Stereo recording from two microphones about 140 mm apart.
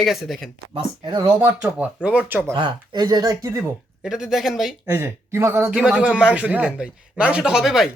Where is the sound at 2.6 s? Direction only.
35° right (ahead or behind).